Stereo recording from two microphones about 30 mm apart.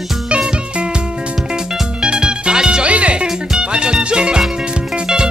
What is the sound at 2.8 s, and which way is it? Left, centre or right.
Music, right.